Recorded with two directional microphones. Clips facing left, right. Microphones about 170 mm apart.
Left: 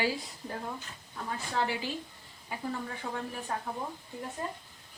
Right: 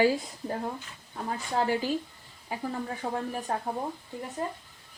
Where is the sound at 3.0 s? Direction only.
40° right (ahead or behind).